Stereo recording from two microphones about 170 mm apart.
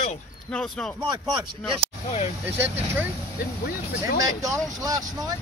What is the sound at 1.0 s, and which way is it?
Speech, 25° right (ahead or behind).